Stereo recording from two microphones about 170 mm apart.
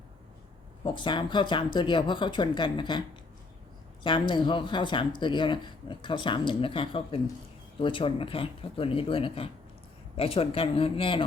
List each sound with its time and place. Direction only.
0.9 s speech: 30° left (ahead or behind)
4.0 s speech: 30° left (ahead or behind)